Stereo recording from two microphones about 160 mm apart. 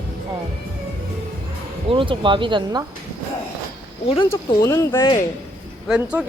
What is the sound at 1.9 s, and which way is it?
Speech, 35° right (ahead or behind).